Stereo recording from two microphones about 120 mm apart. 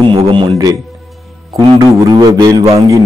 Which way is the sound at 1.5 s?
30° right (ahead or behind).